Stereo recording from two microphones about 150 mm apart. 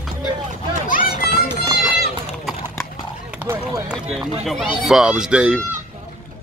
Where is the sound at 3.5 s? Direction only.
5° right (ahead or behind).